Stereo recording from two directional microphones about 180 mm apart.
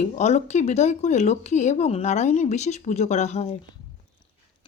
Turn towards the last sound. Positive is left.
turn(degrees=35)  # may be behind; listen again after turning